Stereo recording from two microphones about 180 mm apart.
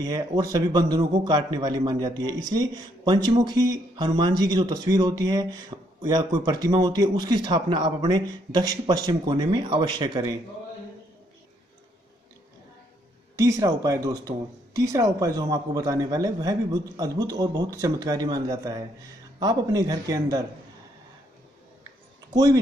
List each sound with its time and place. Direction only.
0.0 s a man's voice: 20° right (ahead or behind)
13.4 s a man's voice: 20° right (ahead or behind)
22.3 s speech: 20° right (ahead or behind)